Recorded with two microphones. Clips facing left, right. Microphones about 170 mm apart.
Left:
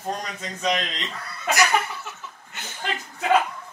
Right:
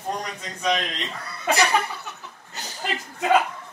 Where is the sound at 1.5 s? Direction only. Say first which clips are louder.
Even; 30° right (ahead or behind).